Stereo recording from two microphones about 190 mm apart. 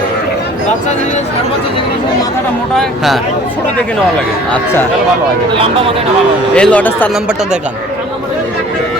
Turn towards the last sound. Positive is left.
turn(degrees=-5)  # may be behind; listen again after turning